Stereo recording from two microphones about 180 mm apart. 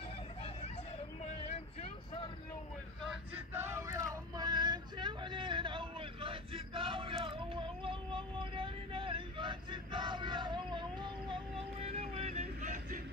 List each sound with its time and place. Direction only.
1.5 s vehicle: 35° left (ahead or behind)
3.5 s vehicle: 15° right (ahead or behind); by 13.0 s 40° right (ahead or behind)